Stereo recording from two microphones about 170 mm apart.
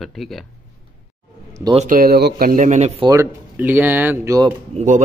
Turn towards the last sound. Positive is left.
turn(degrees=-40)  # may be behind; listen again after turning